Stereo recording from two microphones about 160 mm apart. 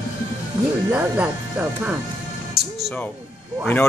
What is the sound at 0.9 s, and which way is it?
Speech, 10° right (ahead or behind).